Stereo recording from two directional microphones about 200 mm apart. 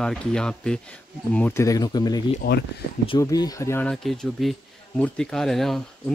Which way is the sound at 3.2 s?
20° left (ahead or behind).